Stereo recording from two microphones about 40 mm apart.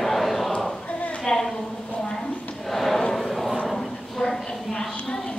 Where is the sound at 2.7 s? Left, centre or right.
Centre.